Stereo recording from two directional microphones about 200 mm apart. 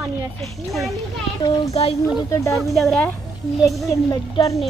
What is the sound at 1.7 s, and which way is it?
Speech, 30° left (ahead or behind).